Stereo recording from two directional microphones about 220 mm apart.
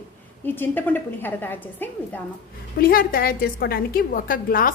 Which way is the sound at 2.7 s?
40° left (ahead or behind).